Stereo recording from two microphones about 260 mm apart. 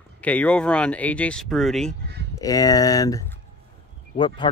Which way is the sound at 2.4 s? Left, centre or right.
Centre.